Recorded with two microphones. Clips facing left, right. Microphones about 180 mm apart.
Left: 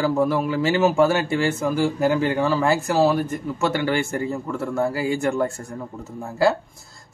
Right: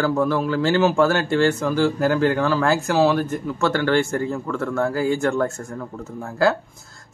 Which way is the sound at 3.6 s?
15° left (ahead or behind).